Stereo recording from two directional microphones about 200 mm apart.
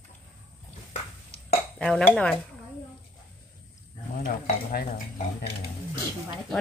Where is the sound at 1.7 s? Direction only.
Centre (ahead or behind).